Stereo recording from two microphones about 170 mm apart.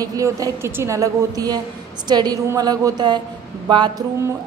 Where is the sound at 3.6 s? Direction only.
25° right (ahead or behind).